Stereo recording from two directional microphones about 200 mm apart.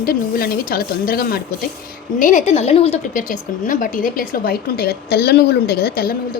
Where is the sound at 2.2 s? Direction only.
35° left (ahead or behind).